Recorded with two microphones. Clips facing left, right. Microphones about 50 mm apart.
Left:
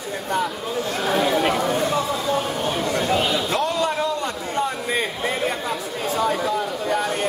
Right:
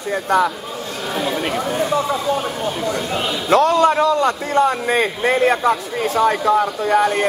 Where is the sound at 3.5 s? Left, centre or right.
Right.